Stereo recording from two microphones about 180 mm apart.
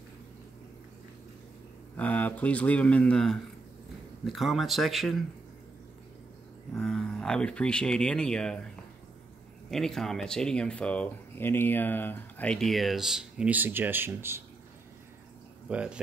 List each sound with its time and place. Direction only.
2.0 s speech: 10° left (ahead or behind)
6.7 s speech: 5° left (ahead or behind)
9.7 s speech: centre (ahead or behind)
15.7 s speech: 5° right (ahead or behind)